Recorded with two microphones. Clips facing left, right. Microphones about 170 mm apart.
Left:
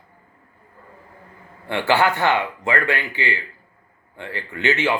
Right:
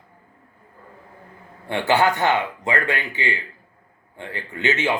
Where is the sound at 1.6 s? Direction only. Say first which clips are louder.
Even; 15° right (ahead or behind).